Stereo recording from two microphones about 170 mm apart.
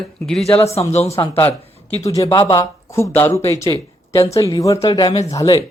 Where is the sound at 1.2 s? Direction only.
15° left (ahead or behind).